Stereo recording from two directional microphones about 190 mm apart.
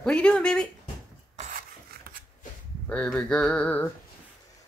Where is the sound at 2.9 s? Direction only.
5° left (ahead or behind).